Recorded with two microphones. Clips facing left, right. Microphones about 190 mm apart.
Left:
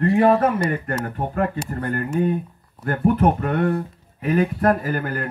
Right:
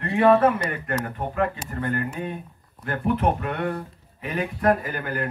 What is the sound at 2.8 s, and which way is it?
Speech, 45° left (ahead or behind).